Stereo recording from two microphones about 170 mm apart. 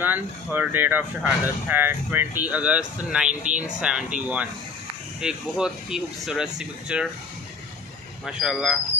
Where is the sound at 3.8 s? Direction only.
5° right (ahead or behind).